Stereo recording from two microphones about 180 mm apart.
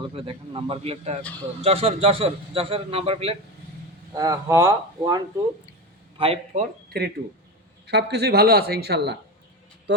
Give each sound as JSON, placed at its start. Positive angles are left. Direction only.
{"t": 0.1, "sound": "a man's voice", "side_deg": -30}
{"t": 4.1, "sound": "speech", "side_deg": -20}
{"t": 6.1, "sound": "speech", "side_deg": -30}
{"t": 6.5, "sound": "speech", "side_deg": -45}
{"t": 7.9, "sound": "speech", "side_deg": -65}